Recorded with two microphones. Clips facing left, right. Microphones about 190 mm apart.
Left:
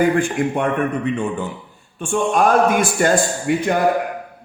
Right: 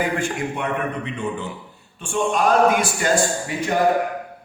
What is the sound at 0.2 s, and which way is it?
Speech, 50° left (ahead or behind).